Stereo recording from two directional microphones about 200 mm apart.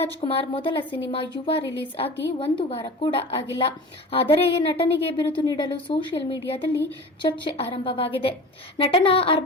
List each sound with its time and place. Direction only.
0.0 s a woman's voice: 30° left (ahead or behind)